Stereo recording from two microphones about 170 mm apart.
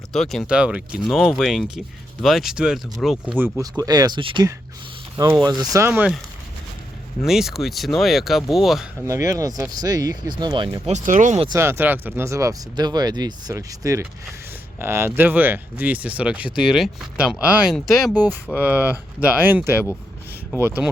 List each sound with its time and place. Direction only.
0.1 s speech: 5° left (ahead or behind)
3.6 s speech: 20° right (ahead or behind)
7.2 s speech: centre (ahead or behind)
9.0 s speech: 20° right (ahead or behind)
10.8 s speech: 45° right (ahead or behind)
11.5 s speech: 15° right (ahead or behind)